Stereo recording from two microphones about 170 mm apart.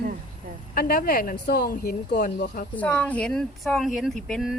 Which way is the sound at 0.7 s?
55° left (ahead or behind).